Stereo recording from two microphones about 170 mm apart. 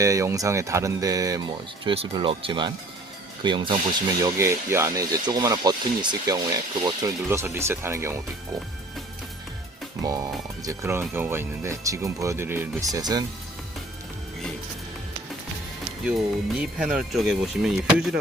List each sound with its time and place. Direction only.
0.0 s speech: 20° right (ahead or behind)
4.2 s speech: 15° right (ahead or behind)
10.0 s speech: 20° right (ahead or behind)
16.6 s speech: 5° right (ahead or behind)